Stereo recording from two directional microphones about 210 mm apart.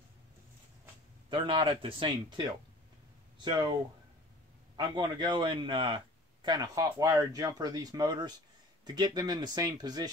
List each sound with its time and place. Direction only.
1.3 s a man's voice: 25° right (ahead or behind)
4.7 s a man's voice: 20° right (ahead or behind)